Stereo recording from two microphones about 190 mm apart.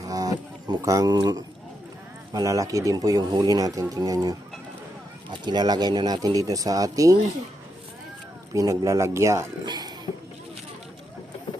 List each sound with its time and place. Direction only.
0.0 s music: 20° right (ahead or behind)
2.3 s speech: 20° right (ahead or behind)
8.5 s speech: 15° right (ahead or behind)